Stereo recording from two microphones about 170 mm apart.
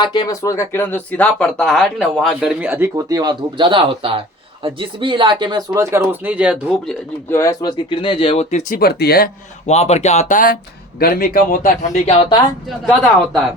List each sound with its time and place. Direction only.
0.0 s speech: 25° left (ahead or behind); by 2.9 s 10° right (ahead or behind)
2.9 s speech: 20° right (ahead or behind)
6.8 s speech: 15° left (ahead or behind); by 8.8 s 45° left (ahead or behind)
8.8 s a man's voice: 65° left (ahead or behind)
9.6 s a man's voice: 40° left (ahead or behind)
11.9 s speech: 35° left (ahead or behind)